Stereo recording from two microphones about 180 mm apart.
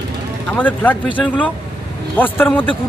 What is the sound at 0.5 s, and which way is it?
Speech, 10° left (ahead or behind).